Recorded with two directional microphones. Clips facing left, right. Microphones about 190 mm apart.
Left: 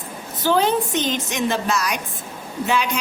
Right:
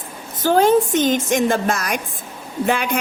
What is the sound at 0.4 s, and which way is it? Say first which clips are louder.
A woman's voice: right 5 dB; 50° right (ahead or behind).